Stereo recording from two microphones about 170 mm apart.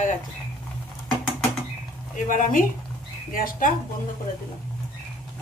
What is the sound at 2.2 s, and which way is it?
Speech, 50° left (ahead or behind).